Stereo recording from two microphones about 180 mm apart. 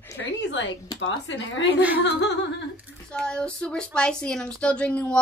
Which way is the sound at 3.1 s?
5° left (ahead or behind).